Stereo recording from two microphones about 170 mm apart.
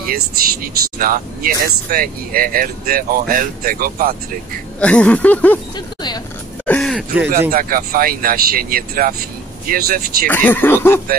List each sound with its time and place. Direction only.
0.0 s speech: 60° right (ahead or behind)
4.7 s speech: 5° left (ahead or behind)
6.6 s speech: 5° left (ahead or behind)
7.3 s speech: 55° right (ahead or behind)
10.2 s speech: 10° left (ahead or behind)